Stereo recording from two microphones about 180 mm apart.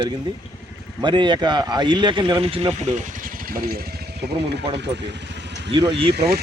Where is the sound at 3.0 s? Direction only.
50° right (ahead or behind); by 5.5 s 75° right (ahead or behind).